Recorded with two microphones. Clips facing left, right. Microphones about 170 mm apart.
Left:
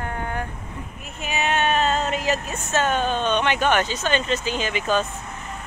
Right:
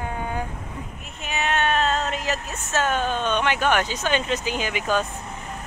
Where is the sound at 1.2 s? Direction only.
Centre (ahead or behind).